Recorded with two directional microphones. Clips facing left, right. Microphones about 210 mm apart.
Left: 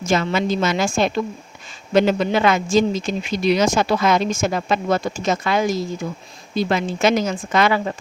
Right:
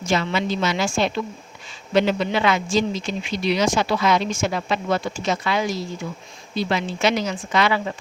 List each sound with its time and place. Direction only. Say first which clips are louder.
0.0 s speech: left 3 dB; 45° left (ahead or behind)